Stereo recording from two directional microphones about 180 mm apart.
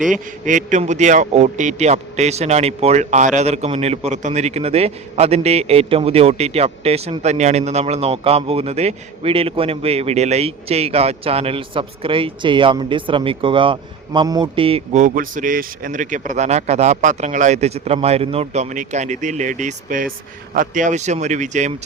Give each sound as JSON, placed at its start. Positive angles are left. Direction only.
{"t": 0.1, "sound": "a man's voice", "side_deg": -45}